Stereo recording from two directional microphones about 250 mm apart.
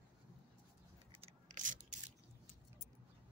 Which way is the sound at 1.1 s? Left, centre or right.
Right.